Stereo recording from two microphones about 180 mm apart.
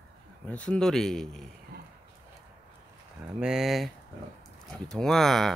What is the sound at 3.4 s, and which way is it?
Speech, centre (ahead or behind).